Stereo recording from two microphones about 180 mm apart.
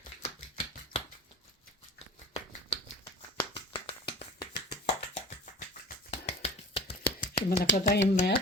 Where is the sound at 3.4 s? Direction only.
25° left (ahead or behind).